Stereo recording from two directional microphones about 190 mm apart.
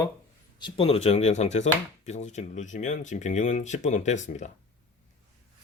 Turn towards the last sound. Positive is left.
turn(degrees=40)  # may be behind; listen again after turning